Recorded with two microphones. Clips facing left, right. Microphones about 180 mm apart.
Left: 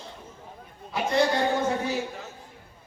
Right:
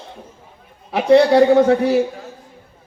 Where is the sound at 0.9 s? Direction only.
70° right (ahead or behind).